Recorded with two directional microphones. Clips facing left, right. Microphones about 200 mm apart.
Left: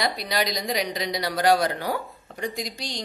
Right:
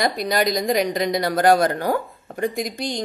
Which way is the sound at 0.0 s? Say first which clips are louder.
Right 5 dB; 50° right (ahead or behind).